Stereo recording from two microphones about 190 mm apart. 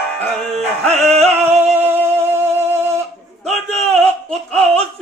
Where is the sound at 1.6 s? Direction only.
10° right (ahead or behind).